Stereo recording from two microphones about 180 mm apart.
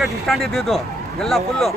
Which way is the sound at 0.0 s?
Centre (ahead or behind).